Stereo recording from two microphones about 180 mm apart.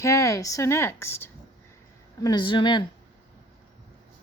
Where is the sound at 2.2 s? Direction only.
25° left (ahead or behind).